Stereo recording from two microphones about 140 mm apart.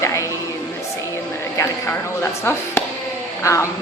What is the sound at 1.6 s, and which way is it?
Speech, 20° left (ahead or behind).